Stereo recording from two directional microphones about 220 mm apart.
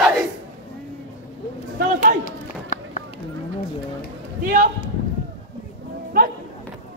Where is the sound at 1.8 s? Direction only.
35° right (ahead or behind).